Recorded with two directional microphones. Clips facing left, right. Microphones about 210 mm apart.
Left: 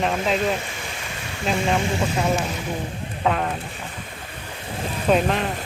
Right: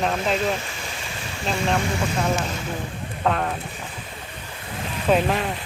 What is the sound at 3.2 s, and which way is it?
Speech, 5° left (ahead or behind).